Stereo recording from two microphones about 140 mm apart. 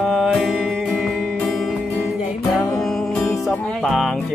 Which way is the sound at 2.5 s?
Centre (ahead or behind).